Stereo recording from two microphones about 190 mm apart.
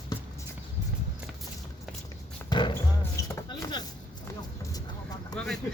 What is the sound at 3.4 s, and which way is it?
Chopping, 20° left (ahead or behind).